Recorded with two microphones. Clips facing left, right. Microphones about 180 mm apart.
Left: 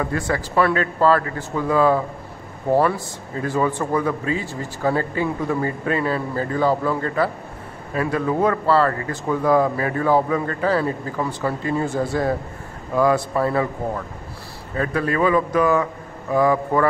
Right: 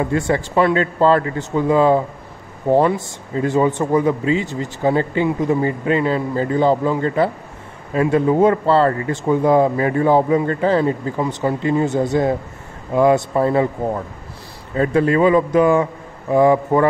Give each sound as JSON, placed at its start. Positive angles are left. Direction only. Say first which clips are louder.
{"t": 0.0, "sound": "speech", "louder": "right 5 dB", "side_deg": -25}